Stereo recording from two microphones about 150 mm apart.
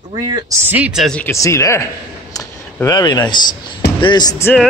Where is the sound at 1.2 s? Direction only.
20° left (ahead or behind).